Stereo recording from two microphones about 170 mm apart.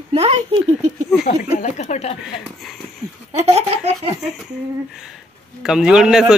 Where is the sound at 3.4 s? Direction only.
40° right (ahead or behind).